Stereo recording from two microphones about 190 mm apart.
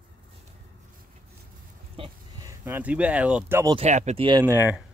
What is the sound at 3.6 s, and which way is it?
Speech, 20° right (ahead or behind).